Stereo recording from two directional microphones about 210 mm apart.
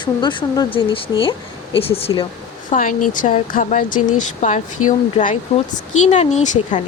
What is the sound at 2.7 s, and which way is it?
Speech, 40° left (ahead or behind).